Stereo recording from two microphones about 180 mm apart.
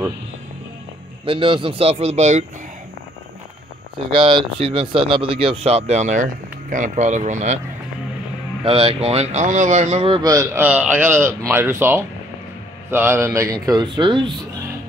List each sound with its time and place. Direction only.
1.2 s speech: 30° right (ahead or behind)
4.1 s speech: 30° right (ahead or behind)
8.6 s speech: 30° right (ahead or behind)
10.3 s speech: 15° right (ahead or behind)